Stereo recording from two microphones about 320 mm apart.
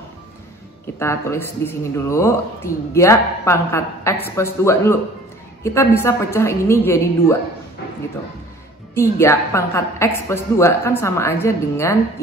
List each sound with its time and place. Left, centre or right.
0.9 s speech: centre
8.9 s speech: centre